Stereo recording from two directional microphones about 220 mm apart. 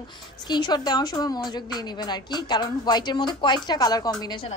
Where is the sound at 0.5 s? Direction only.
20° left (ahead or behind).